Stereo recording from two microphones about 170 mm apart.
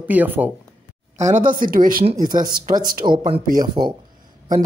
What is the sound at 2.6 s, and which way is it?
Speech, 50° right (ahead or behind).